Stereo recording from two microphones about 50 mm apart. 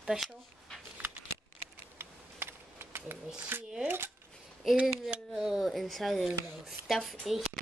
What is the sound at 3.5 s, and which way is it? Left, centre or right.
Dishes, right.